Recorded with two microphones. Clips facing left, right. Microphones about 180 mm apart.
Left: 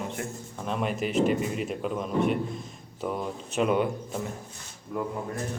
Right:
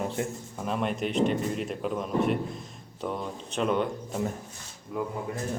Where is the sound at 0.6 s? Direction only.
Centre (ahead or behind).